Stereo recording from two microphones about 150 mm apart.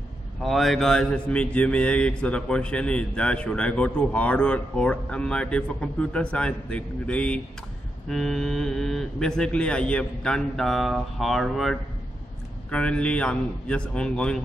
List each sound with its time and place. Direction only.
0.4 s a man's voice: centre (ahead or behind)